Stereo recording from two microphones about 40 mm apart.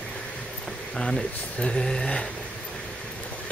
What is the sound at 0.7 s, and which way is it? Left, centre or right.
Speech, centre.